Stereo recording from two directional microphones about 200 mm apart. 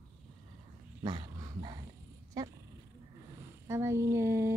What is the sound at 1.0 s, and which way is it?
Dog, 20° right (ahead or behind).